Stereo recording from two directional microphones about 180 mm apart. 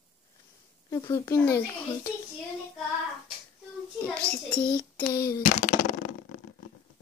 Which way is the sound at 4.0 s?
5° left (ahead or behind).